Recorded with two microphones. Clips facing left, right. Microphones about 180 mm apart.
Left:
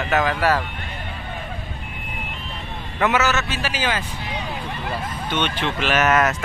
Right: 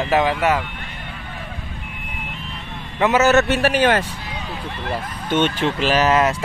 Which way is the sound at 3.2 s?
60° right (ahead or behind).